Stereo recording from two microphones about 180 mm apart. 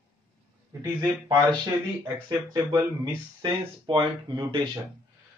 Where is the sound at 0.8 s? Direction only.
20° right (ahead or behind).